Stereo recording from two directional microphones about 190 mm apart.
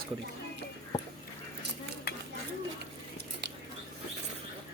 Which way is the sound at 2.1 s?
55° left (ahead or behind).